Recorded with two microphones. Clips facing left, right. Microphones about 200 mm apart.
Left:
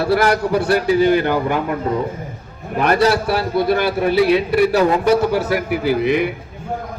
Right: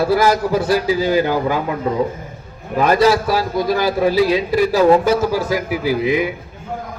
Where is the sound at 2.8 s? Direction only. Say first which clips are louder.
Right 1 dB; 65° left (ahead or behind).